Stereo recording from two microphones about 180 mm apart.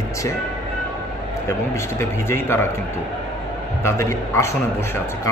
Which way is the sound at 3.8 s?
15° left (ahead or behind).